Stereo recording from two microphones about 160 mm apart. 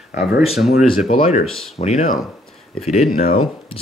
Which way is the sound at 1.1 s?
40° left (ahead or behind).